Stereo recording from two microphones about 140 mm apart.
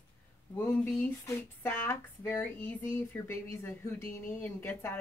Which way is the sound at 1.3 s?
20° left (ahead or behind).